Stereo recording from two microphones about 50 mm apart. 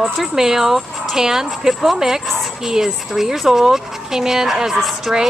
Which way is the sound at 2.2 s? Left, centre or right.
Centre.